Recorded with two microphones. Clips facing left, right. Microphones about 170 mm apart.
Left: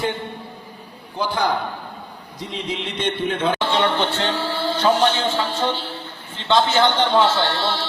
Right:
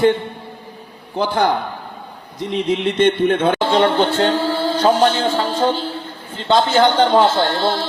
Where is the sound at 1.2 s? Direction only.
60° right (ahead or behind).